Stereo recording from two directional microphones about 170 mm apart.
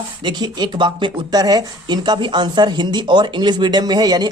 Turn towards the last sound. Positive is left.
turn(degrees=-25)  # may be behind; listen again after turning